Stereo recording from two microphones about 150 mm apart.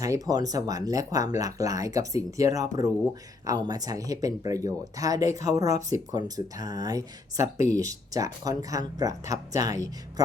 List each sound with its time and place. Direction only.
0.0 s speech: 25° right (ahead or behind)